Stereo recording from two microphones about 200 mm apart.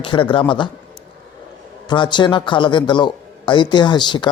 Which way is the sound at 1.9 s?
25° left (ahead or behind).